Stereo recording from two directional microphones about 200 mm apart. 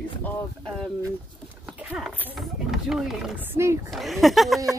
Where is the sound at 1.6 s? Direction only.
5° right (ahead or behind).